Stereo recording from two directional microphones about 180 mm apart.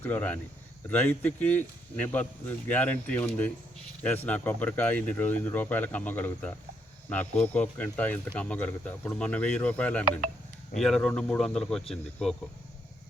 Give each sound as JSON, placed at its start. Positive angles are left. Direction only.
{"t": 0.0, "sound": "speech", "side_deg": 10}